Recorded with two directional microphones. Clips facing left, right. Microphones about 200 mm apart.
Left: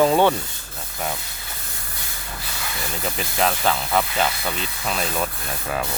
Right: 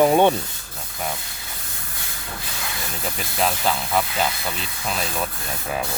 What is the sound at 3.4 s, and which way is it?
Speech, centre (ahead or behind).